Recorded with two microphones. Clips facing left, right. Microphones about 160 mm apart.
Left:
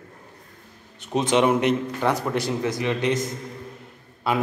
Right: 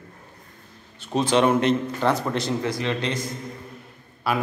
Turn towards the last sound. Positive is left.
turn(degrees=20)  # may be behind; listen again after turning